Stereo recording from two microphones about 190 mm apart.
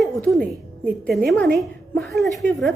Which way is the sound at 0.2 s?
Centre (ahead or behind).